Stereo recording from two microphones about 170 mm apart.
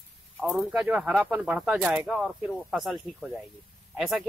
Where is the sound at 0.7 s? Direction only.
5° right (ahead or behind).